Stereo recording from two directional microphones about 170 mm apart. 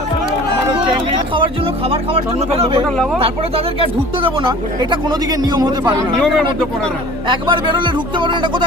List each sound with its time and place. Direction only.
0.7 s music: 30° right (ahead or behind)
2.1 s speech: 35° right (ahead or behind)
6.1 s speech: 5° left (ahead or behind)
7.3 s speech: 30° right (ahead or behind)